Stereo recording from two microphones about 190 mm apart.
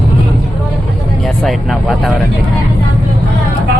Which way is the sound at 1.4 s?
Centre (ahead or behind).